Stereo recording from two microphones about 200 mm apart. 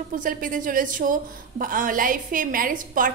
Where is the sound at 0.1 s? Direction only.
45° right (ahead or behind).